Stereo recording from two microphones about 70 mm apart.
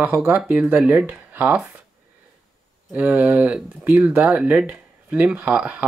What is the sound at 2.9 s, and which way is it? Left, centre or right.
Speech, right.